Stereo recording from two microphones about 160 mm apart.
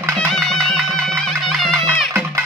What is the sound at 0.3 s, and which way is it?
Music, centre (ahead or behind).